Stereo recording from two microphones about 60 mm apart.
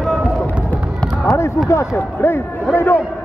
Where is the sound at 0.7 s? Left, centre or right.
Left.